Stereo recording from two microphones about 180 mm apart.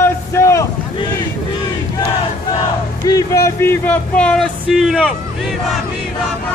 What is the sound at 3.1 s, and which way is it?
Speech, 20° left (ahead or behind).